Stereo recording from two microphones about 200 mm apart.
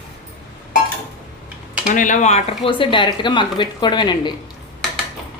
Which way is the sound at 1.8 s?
40° left (ahead or behind).